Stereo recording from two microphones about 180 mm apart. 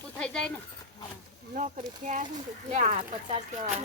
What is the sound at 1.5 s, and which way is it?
Speech, 45° right (ahead or behind).